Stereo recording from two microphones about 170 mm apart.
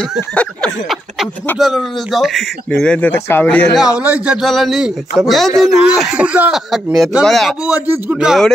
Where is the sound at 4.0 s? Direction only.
5° right (ahead or behind).